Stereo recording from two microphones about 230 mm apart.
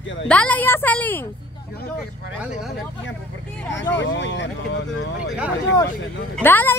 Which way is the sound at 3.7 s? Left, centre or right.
Left.